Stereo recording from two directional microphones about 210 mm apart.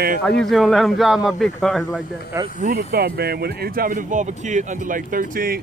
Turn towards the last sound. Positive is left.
turn(degrees=-40)  # may be behind; listen again after turning